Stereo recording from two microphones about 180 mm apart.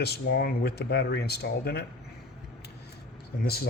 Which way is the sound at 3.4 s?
60° left (ahead or behind).